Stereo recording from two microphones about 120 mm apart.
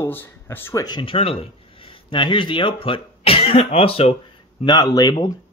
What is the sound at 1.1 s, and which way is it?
Speech, 55° left (ahead or behind).